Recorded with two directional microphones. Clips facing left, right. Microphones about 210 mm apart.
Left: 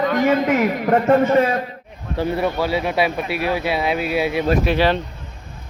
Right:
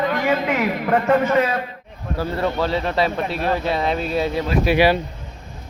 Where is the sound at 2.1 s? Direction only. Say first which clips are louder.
Left 2 dB; 10° left (ahead or behind).